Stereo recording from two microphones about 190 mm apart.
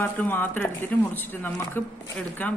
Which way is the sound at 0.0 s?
10° left (ahead or behind).